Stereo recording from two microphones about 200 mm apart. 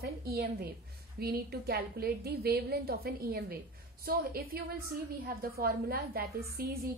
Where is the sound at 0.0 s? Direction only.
50° right (ahead or behind).